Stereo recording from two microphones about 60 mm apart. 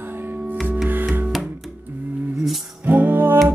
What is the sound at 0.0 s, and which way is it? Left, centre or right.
Music, right.